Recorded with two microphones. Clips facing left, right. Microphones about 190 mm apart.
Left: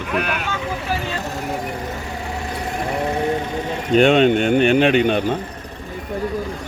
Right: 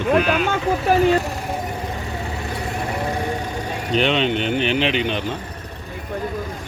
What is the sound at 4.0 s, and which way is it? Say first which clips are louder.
Speech: left 6 dB; 45° left (ahead or behind).